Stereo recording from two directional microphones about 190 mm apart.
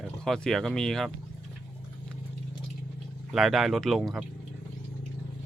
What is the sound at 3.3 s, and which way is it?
Speech, centre (ahead or behind).